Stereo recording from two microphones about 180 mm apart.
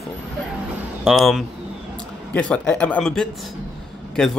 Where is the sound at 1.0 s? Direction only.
Centre (ahead or behind).